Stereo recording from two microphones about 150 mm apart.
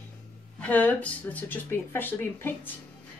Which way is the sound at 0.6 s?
10° left (ahead or behind).